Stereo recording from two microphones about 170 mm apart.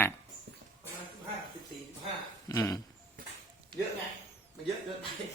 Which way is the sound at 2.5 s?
20° left (ahead or behind).